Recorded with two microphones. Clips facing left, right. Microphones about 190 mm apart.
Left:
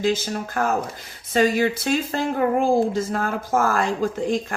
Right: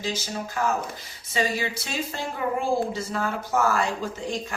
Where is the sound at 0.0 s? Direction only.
55° left (ahead or behind).